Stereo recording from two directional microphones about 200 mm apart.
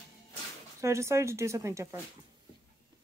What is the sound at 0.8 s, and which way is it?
Speech, 15° right (ahead or behind).